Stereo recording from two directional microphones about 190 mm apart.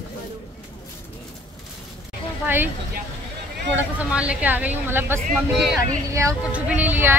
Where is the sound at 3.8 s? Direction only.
5° right (ahead or behind).